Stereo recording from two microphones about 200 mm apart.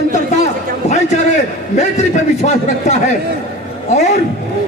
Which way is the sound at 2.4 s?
35° left (ahead or behind).